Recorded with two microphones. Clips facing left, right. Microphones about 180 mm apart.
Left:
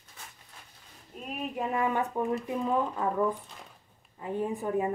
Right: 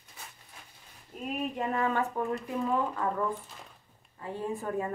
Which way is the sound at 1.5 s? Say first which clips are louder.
Left 2 dB; 10° left (ahead or behind).